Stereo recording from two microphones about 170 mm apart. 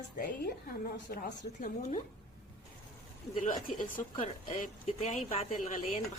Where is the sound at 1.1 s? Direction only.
65° left (ahead or behind).